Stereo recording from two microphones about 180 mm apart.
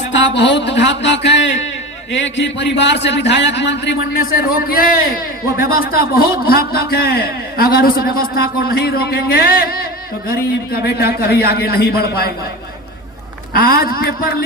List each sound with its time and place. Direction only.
0.1 s a man's voice: 80° left
4.2 s a man's voice: 55° left (ahead or behind)
13.5 s a man's voice: 55° left (ahead or behind)